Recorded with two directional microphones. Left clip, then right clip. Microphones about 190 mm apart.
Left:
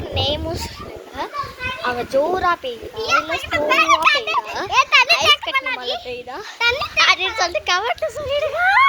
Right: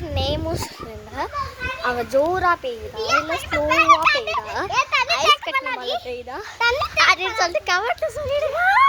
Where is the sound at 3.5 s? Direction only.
50° left (ahead or behind).